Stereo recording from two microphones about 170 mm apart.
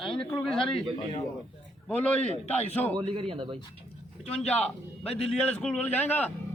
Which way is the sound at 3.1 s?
30° right (ahead or behind).